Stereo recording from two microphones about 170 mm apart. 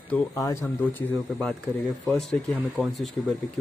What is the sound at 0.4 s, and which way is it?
Speech, 15° left (ahead or behind).